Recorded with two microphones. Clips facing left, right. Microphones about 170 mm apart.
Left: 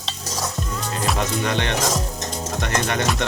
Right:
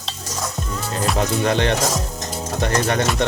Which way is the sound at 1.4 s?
35° right (ahead or behind).